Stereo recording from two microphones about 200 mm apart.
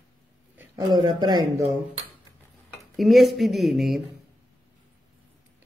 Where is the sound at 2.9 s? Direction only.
Centre (ahead or behind).